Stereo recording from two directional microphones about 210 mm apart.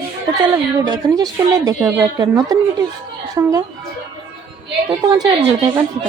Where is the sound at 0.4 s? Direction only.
15° right (ahead or behind).